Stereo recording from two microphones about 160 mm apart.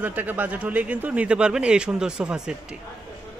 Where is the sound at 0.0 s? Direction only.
10° right (ahead or behind).